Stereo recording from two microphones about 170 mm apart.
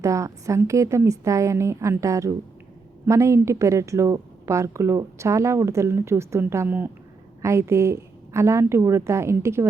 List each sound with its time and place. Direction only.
0.0 s speech: 20° right (ahead or behind)